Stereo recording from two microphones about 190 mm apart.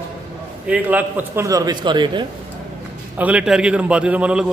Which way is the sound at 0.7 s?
10° right (ahead or behind).